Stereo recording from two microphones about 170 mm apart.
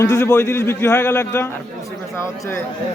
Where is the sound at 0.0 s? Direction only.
15° left (ahead or behind).